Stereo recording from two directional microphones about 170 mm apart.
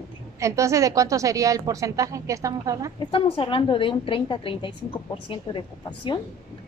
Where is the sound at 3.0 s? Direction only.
35° left (ahead or behind).